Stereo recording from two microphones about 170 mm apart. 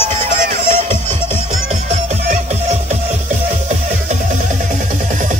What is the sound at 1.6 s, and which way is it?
Music, 40° right (ahead or behind).